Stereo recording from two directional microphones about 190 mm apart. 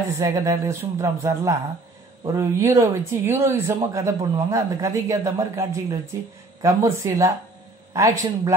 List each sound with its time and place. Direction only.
0.2 s speech: 15° right (ahead or behind)